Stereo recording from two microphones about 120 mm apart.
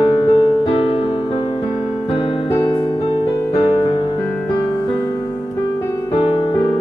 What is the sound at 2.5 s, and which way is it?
Music, 35° left (ahead or behind).